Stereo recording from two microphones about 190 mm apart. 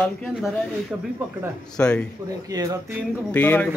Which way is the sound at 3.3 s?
10° left (ahead or behind).